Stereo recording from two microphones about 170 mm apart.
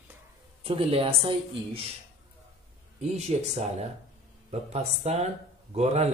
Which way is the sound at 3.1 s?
40° right (ahead or behind).